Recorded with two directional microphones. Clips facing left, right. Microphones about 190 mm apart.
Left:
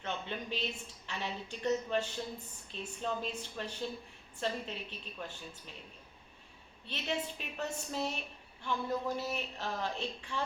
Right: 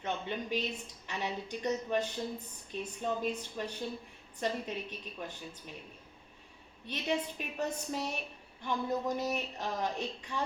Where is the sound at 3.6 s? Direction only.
10° right (ahead or behind).